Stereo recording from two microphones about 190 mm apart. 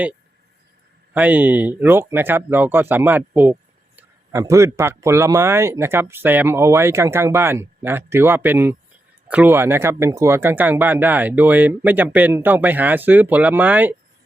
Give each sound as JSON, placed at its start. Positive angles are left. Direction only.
{"t": 1.1, "sound": "speech", "side_deg": -10}